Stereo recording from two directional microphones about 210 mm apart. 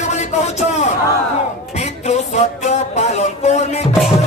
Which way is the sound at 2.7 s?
35° left (ahead or behind).